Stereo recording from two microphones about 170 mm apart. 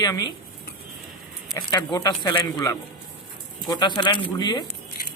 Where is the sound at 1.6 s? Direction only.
20° left (ahead or behind).